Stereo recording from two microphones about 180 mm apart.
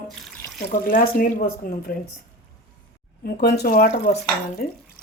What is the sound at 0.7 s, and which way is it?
Speech, 50° left (ahead or behind).